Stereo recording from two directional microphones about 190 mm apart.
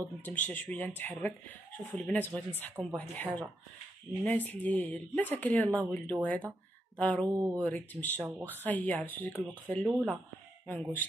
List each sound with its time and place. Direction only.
0.2 s speech: 10° left (ahead or behind)
7.3 s speech: 15° right (ahead or behind)
7.6 s speech: 10° left (ahead or behind)
8.2 s speech: 10° right (ahead or behind)
8.5 s speech: 10° left (ahead or behind)